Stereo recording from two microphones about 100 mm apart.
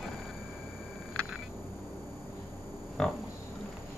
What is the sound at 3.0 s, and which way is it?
Pig, 5° left (ahead or behind).